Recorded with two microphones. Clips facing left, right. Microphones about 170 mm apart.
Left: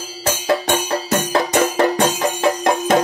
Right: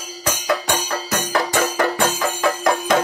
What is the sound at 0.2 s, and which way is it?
Music, 30° left (ahead or behind).